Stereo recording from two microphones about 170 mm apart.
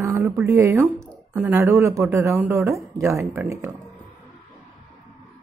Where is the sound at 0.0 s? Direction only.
10° right (ahead or behind).